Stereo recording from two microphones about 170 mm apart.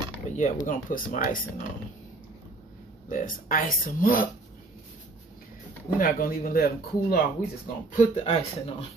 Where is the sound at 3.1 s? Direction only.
50° left (ahead or behind).